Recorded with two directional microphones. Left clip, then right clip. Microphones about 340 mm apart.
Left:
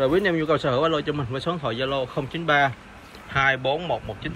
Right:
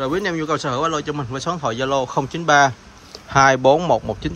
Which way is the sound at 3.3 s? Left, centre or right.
Right.